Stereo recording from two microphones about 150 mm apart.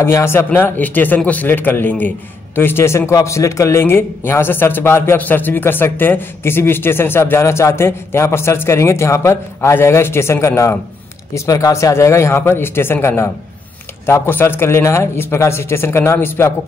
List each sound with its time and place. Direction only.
0.0 s speech: 15° left (ahead or behind)